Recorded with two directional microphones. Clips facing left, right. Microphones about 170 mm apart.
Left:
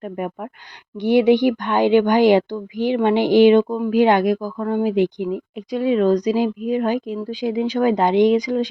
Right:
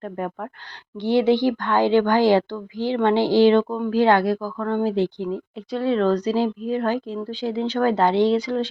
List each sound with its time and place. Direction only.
1.0 s a woman's voice: 15° left (ahead or behind)